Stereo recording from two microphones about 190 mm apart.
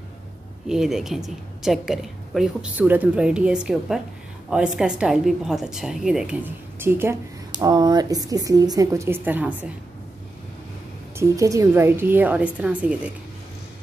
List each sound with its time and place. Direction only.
0.7 s a woman's voice: 5° right (ahead or behind)
11.1 s a woman's voice: 15° right (ahead or behind)